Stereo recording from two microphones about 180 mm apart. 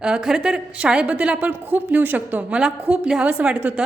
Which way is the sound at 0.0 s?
5° right (ahead or behind).